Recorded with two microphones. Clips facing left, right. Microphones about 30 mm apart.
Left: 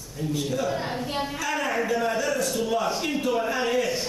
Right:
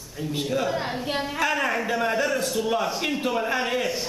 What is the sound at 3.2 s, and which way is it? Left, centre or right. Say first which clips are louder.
Speech: left 1 dB; centre.